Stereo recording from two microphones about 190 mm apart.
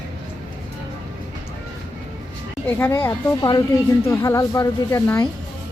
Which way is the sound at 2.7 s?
15° left (ahead or behind).